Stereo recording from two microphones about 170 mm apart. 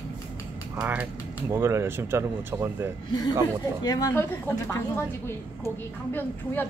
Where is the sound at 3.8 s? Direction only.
20° left (ahead or behind).